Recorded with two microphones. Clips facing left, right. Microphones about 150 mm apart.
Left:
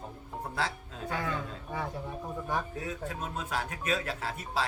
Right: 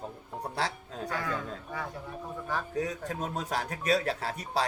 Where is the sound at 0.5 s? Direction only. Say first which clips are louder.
Right 1 dB; 35° right (ahead or behind).